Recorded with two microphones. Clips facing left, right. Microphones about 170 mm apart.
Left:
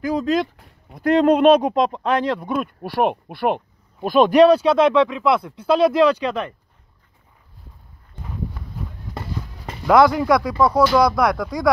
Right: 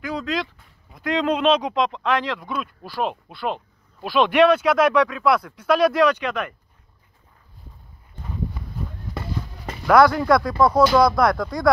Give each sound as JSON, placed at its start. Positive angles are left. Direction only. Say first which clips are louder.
{"t": 0.0, "sound": "speech", "louder": "left 6 dB", "side_deg": 40}
{"t": 1.1, "sound": "speech", "louder": "left 6 dB", "side_deg": 50}
{"t": 9.8, "sound": "speech", "louder": "left 1 dB", "side_deg": 15}